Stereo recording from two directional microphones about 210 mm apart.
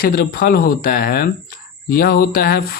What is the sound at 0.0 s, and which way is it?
Speech, 45° left (ahead or behind).